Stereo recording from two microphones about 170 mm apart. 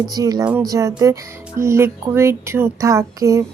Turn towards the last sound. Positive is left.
turn(degrees=-20)  # may be behind; listen again after turning